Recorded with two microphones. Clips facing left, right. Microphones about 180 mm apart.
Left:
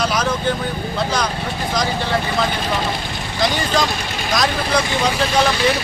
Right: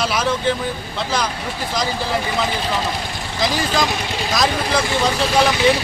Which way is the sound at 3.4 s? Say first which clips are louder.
Left 1 dB; centre (ahead or behind).